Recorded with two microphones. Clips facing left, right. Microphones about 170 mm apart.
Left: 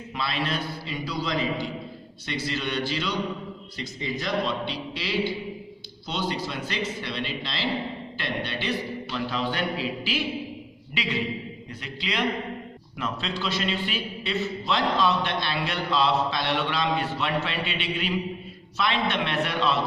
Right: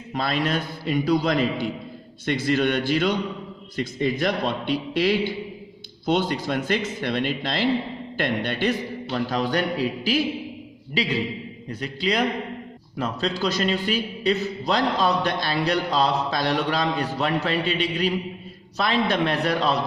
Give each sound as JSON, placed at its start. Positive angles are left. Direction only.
{"t": 0.1, "sound": "a man's voice", "side_deg": -45}